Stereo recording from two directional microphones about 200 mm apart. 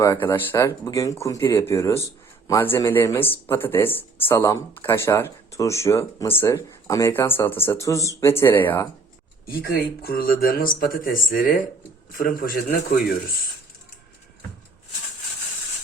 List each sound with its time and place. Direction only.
0.0 s speech: 15° left (ahead or behind)
9.5 s speech: 50° left (ahead or behind)